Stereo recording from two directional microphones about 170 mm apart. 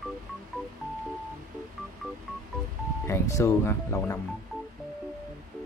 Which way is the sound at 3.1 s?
15° left (ahead or behind).